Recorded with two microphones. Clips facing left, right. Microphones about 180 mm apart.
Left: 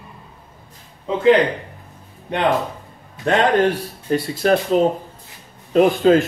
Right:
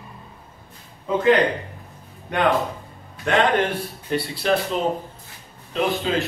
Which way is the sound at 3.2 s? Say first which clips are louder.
Left 4 dB; 40° left (ahead or behind).